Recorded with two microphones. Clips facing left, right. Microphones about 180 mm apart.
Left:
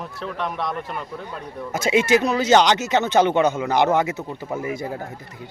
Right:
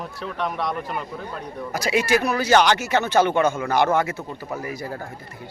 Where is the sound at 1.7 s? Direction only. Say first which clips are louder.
Left 3 dB; 25° left (ahead or behind).